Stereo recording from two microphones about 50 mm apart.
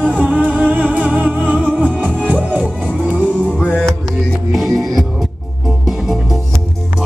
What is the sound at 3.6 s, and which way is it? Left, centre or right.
Music, left.